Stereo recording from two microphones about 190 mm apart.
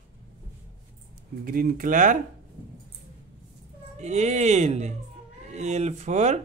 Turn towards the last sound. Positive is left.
turn(degrees=-35)  # may be behind; listen again after turning